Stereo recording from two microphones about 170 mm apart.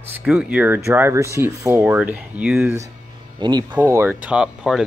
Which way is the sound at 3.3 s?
25° right (ahead or behind).